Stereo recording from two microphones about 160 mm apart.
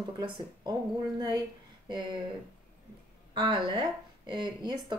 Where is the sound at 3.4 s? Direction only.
30° right (ahead or behind).